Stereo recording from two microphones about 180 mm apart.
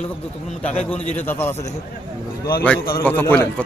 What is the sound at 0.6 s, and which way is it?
Speech, 5° left (ahead or behind).